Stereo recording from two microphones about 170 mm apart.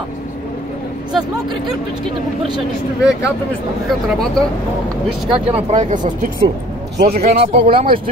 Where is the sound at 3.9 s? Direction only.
5° left (ahead or behind).